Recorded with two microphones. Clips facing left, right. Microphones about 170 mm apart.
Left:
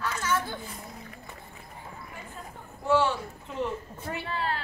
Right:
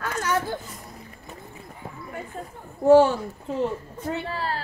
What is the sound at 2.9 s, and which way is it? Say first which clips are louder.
Speech: right 10 dB; 40° right (ahead or behind).